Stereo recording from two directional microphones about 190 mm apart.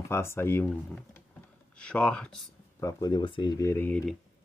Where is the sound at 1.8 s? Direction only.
5° left (ahead or behind).